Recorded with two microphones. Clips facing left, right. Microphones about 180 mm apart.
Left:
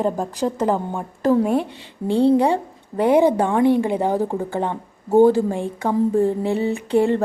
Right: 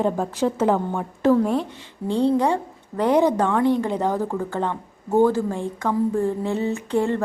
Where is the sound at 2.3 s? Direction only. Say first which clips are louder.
Left 3 dB; 15° left (ahead or behind).